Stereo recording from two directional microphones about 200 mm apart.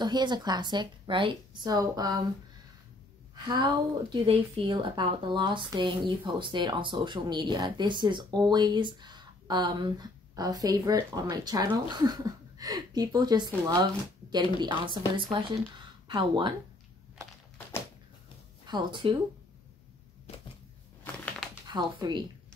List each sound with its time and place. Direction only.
0.0 s a woman's voice: 20° right (ahead or behind)
3.4 s a woman's voice: 25° right (ahead or behind)
18.7 s a woman's voice: 25° right (ahead or behind)
20.3 s a sound: 30° left (ahead or behind)
21.0 s a sound: 5° left (ahead or behind)
21.6 s speech: 25° right (ahead or behind)